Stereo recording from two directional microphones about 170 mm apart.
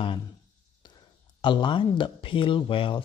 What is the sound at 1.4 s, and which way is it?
Speech, 30° left (ahead or behind).